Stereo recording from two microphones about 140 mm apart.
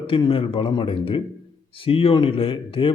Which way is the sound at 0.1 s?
40° left (ahead or behind).